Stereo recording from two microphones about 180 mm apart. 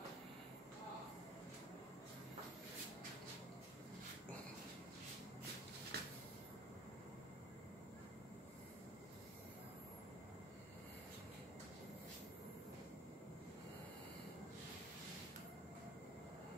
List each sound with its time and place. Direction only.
5.9 s cupboard open or close: 65° right (ahead or behind)